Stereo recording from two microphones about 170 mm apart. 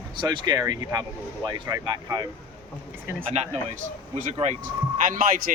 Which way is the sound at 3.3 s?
40° right (ahead or behind).